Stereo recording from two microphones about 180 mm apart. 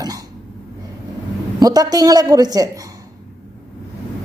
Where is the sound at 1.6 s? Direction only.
20° right (ahead or behind).